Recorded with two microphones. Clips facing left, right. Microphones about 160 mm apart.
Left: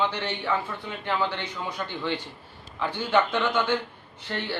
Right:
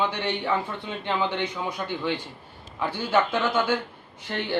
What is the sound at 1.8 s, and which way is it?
Speech, 15° right (ahead or behind).